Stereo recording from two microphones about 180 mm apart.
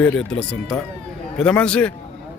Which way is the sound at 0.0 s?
5° left (ahead or behind).